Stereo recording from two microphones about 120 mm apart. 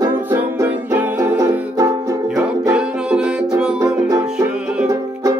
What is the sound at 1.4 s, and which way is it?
Music, 30° right (ahead or behind).